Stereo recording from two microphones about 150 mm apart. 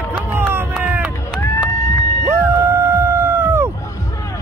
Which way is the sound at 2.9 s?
15° right (ahead or behind).